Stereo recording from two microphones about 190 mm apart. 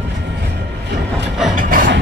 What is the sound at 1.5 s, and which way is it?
Music, 45° right (ahead or behind).